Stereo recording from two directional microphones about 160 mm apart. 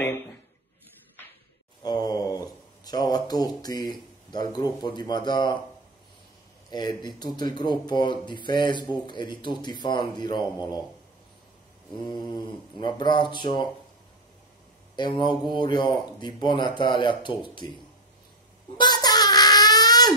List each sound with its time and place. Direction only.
1.8 s a sound: 25° left (ahead or behind)
4.3 s speech: 25° left (ahead or behind)
6.7 s speech: 25° left (ahead or behind)
12.7 s speech: 30° left (ahead or behind)
15.0 s speech: 30° left (ahead or behind)
18.8 s a sound: 25° left (ahead or behind)